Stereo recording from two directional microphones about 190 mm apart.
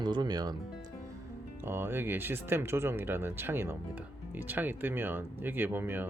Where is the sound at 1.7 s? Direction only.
10° right (ahead or behind).